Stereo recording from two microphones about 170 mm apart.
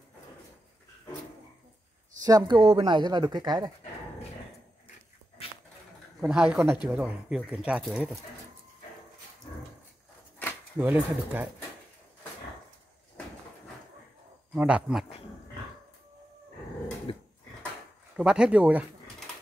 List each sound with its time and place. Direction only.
2.2 s speech: 25° right (ahead or behind)
6.2 s speech: 5° right (ahead or behind)
10.8 s speech: 10° right (ahead or behind)
14.5 s speech: 5° right (ahead or behind)
17.1 s dog: 30° left (ahead or behind)
18.1 s speech: 5° right (ahead or behind)